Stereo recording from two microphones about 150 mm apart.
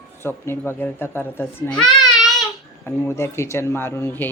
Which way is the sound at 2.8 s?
15° left (ahead or behind).